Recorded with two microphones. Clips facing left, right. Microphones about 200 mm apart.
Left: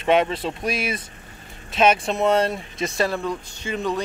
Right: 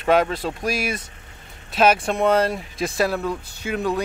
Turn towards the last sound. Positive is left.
turn(degrees=-5)  # may be behind; listen again after turning